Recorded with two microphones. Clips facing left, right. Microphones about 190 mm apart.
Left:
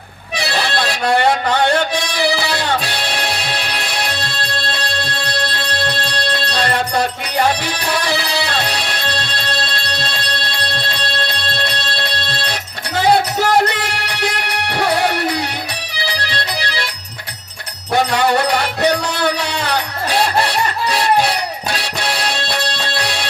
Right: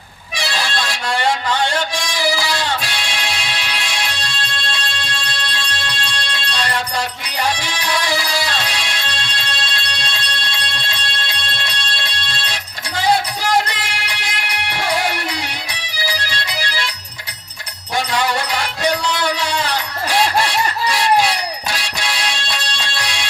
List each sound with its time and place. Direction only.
0.3 s music: 60° left (ahead or behind)
17.9 s music: 60° left (ahead or behind)